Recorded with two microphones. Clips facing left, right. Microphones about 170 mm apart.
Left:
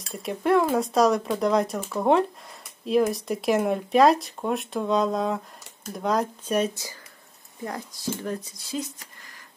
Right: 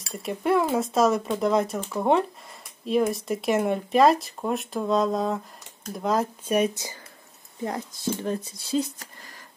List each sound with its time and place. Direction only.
0.0 s speech: centre (ahead or behind)
7.6 s speech: 25° right (ahead or behind)